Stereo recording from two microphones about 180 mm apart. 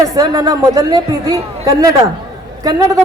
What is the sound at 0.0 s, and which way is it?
A woman's voice, 20° right (ahead or behind).